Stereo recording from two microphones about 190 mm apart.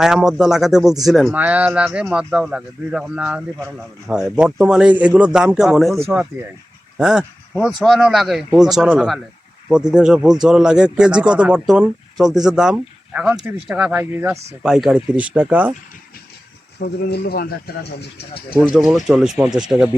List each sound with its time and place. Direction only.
0.0 s speech: 5° right (ahead or behind)
16.8 s speech: 55° left (ahead or behind)
18.5 s speech: 5° right (ahead or behind)